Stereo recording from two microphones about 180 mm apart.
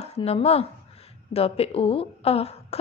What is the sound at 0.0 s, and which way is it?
A woman's voice, 35° left (ahead or behind).